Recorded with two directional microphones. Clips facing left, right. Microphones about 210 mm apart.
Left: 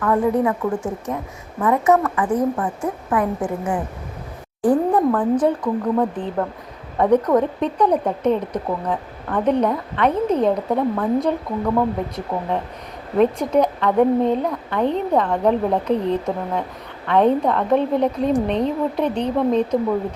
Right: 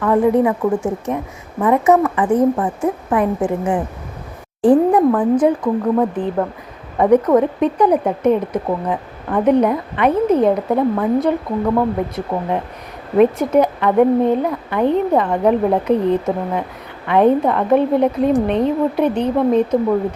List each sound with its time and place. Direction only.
0.0 s speech: 20° right (ahead or behind)
4.9 s a woman's voice: 10° right (ahead or behind)